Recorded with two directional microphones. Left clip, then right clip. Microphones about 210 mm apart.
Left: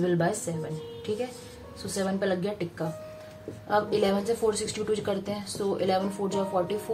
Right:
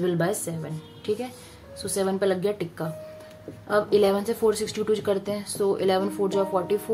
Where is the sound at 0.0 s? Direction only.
45° right (ahead or behind).